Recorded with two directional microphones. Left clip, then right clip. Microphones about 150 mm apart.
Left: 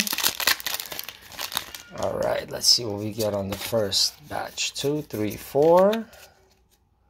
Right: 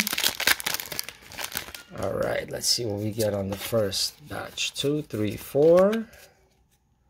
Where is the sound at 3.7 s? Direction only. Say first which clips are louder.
Left 3 dB; 50° right (ahead or behind).